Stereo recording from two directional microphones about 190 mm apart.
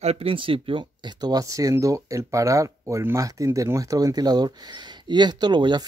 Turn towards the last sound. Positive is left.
turn(degrees=-25)  # may be behind; listen again after turning